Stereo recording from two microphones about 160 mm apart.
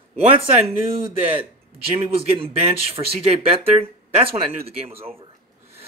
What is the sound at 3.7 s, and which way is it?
Speech, 40° right (ahead or behind).